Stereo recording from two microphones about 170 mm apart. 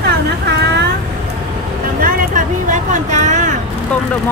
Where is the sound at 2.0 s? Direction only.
45° right (ahead or behind).